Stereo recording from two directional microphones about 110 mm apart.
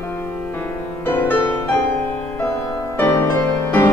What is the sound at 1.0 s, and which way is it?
Music, 20° left (ahead or behind).